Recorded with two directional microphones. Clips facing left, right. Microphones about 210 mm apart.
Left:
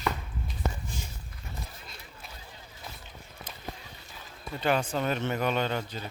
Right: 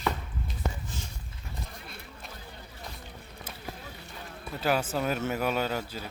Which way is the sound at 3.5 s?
10° right (ahead or behind).